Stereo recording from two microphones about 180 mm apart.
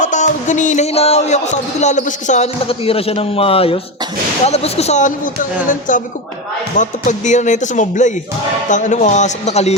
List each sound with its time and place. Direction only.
0.0 s speech: 45° left (ahead or behind)